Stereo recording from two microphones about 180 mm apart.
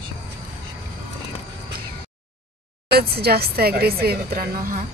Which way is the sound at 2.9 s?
60° right (ahead or behind).